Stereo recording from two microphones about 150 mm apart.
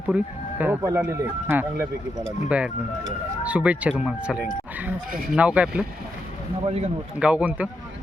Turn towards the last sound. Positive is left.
turn(degrees=-10)  # may be behind; listen again after turning